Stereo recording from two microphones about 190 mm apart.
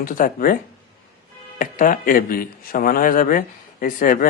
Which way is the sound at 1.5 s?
45° left (ahead or behind).